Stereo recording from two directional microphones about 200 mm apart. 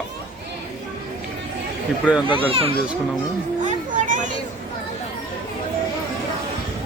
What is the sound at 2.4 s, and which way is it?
Speech, 30° right (ahead or behind).